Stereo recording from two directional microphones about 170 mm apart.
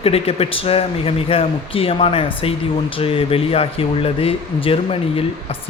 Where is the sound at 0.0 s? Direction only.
35° left (ahead or behind).